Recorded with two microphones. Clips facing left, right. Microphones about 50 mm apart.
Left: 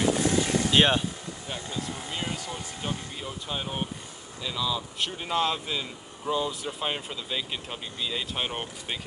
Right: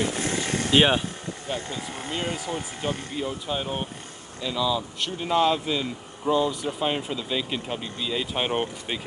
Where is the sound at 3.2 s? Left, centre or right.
Centre.